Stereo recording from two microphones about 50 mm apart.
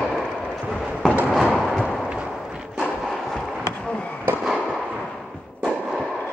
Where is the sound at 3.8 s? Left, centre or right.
Left.